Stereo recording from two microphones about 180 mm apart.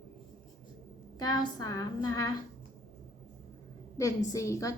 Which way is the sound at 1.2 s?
20° left (ahead or behind).